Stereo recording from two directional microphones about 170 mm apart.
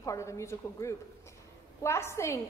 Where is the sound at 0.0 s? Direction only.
15° left (ahead or behind).